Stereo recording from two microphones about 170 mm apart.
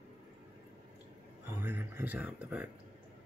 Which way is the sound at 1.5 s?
15° right (ahead or behind).